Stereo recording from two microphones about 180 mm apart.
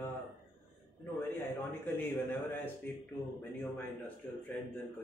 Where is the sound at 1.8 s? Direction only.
10° left (ahead or behind).